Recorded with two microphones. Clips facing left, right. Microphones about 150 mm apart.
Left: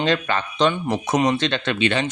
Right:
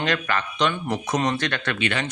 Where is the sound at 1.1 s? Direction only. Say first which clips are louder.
Left 5 dB; 15° left (ahead or behind).